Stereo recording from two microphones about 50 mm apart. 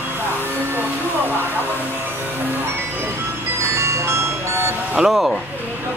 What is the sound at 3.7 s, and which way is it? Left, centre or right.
Ice cream truck, right.